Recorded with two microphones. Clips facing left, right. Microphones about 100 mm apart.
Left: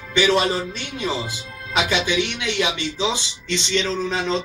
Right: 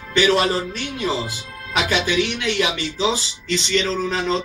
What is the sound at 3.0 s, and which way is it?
Speech, centre (ahead or behind).